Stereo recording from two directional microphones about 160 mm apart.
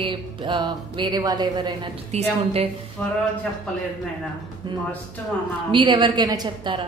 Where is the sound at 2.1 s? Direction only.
40° right (ahead or behind).